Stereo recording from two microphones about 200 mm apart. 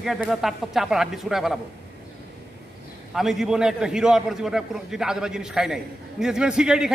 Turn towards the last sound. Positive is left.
turn(degrees=-5)  # may be behind; listen again after turning